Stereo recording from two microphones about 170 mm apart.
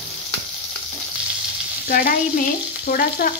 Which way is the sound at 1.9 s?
55° left (ahead or behind).